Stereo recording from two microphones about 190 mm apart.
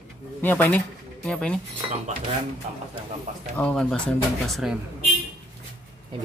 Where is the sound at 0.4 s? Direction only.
10° left (ahead or behind).